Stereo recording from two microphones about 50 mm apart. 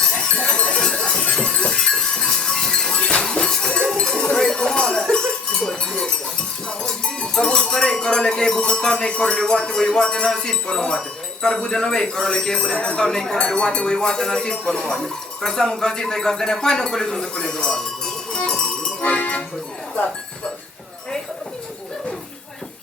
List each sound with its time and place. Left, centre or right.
0.4 s a sound: left
3.1 s music: centre
3.9 s a sound: centre
5.6 s cowbell: centre
6.7 s speech: centre
19.0 s music: left